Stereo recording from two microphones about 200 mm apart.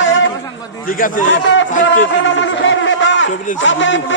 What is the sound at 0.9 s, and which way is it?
Speech, 40° left (ahead or behind).